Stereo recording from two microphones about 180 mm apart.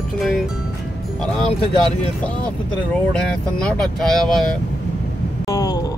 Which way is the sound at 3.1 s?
5° left (ahead or behind).